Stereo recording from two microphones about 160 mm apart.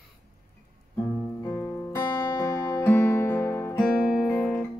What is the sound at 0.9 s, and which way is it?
Music, 15° left (ahead or behind).